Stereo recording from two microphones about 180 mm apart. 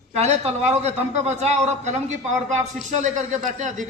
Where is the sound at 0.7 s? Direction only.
35° right (ahead or behind).